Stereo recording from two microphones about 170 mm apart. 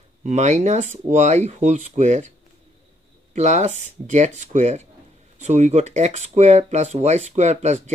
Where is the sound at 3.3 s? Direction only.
45° right (ahead or behind).